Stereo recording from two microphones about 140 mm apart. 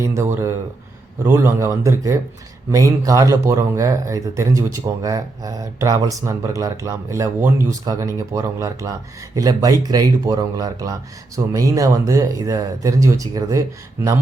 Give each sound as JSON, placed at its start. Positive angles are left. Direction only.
{"t": 0.0, "sound": "speech", "side_deg": -20}